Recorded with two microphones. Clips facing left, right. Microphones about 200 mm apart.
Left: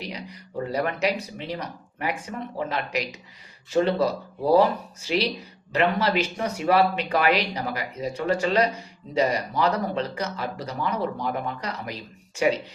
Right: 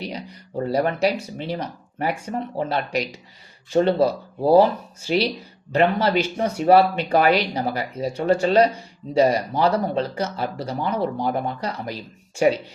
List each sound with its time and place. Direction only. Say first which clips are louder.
0.6 s speech: right 5 dB; 35° right (ahead or behind)